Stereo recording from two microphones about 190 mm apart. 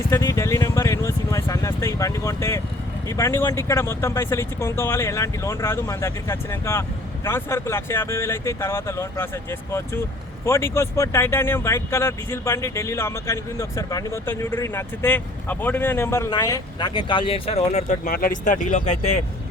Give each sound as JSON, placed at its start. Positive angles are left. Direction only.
{"t": 0.1, "sound": "vehicle", "side_deg": 15}
{"t": 3.1, "sound": "speech", "side_deg": 15}